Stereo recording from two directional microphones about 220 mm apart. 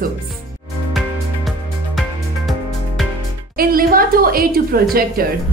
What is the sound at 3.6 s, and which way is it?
A woman's voice, 40° right (ahead or behind).